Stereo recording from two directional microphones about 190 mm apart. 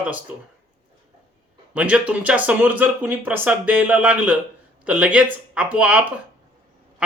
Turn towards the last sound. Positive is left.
turn(degrees=-5)  # may be behind; listen again after turning